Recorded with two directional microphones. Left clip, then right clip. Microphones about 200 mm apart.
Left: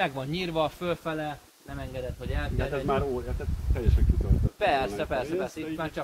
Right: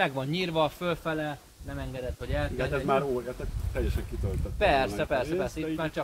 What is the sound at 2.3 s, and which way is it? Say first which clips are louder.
Speech: right 3 dB; 55° right (ahead or behind).